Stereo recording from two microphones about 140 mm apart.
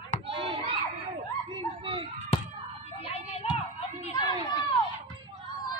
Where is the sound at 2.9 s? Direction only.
45° left (ahead or behind).